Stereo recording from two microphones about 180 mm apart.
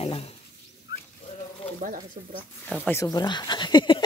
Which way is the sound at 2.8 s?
15° left (ahead or behind).